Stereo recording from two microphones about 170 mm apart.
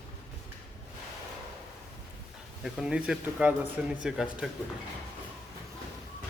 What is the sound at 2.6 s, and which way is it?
A man's voice, 5° right (ahead or behind).